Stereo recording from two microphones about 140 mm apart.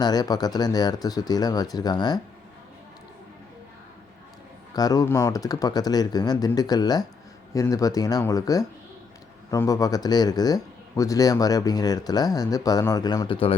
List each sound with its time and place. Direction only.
0.0 s speech: 30° left (ahead or behind)
4.7 s speech: 25° left (ahead or behind)